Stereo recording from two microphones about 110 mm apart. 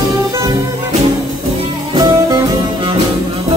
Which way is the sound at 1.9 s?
35° right (ahead or behind).